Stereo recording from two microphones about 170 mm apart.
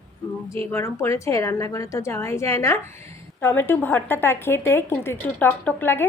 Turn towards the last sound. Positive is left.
turn(degrees=10)  # may be behind; listen again after turning